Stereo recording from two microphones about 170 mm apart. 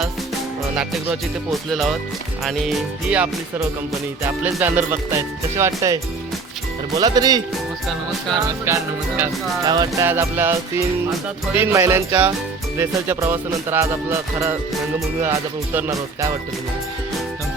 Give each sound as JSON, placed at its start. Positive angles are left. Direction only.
{"t": 1.7, "sound": "speech", "side_deg": 0}
{"t": 4.5, "sound": "speech", "side_deg": -10}
{"t": 8.6, "sound": "speech", "side_deg": -15}